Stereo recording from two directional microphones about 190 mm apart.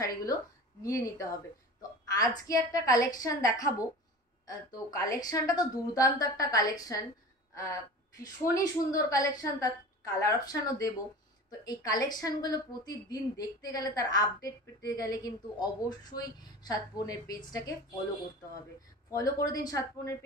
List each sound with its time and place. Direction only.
0.0 s a woman's voice: 20° left (ahead or behind)
8.4 s a woman's voice: 15° left (ahead or behind)
19.0 s a woman's voice: 20° left (ahead or behind)